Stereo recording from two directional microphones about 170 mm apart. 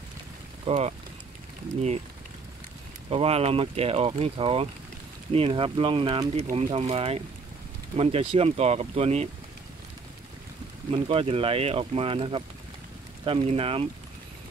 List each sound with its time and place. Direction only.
0.7 s speech: 40° right (ahead or behind)
3.1 s speech: 35° right (ahead or behind)
10.9 s speech: 35° right (ahead or behind)